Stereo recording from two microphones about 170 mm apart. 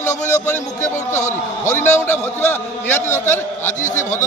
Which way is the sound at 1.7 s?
15° left (ahead or behind).